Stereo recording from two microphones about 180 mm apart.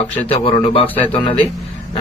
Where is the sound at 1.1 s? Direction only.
30° left (ahead or behind).